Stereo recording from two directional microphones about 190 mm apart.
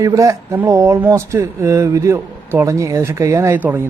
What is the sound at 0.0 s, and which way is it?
Speech, 15° right (ahead or behind).